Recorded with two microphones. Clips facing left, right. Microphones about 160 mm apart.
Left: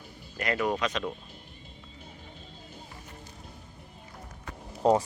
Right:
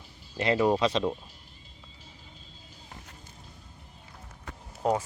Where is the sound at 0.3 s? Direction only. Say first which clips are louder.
Right 5 dB; 25° right (ahead or behind).